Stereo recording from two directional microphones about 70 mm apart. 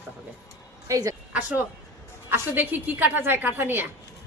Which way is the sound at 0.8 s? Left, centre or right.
Right.